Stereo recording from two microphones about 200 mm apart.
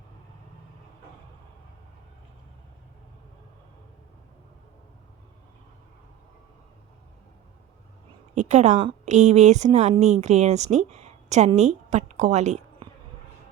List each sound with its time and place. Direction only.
8.4 s a woman's voice: 35° right (ahead or behind)